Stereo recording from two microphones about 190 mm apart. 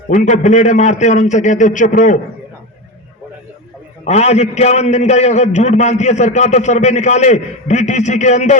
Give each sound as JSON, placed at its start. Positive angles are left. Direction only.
{"t": 0.1, "sound": "a man's voice", "side_deg": 40}
{"t": 4.0, "sound": "a man's voice", "side_deg": 35}